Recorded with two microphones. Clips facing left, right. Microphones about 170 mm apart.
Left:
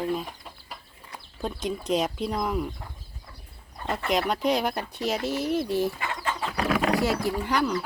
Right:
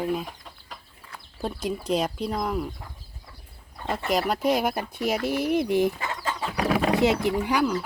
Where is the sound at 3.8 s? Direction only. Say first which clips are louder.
Right 1 dB; centre (ahead or behind).